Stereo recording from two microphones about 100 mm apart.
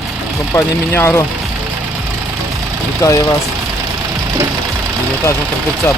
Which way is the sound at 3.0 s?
40° left (ahead or behind).